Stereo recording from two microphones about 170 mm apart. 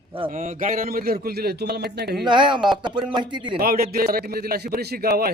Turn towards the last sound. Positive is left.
turn(degrees=-65)  # may be behind; listen again after turning